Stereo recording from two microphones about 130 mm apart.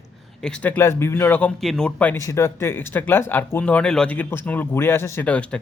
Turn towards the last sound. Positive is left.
turn(degrees=10)  # may be behind; listen again after turning